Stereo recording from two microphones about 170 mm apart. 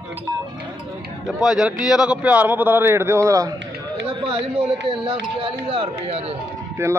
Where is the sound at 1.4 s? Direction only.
Centre (ahead or behind); by 3.5 s 20° right (ahead or behind).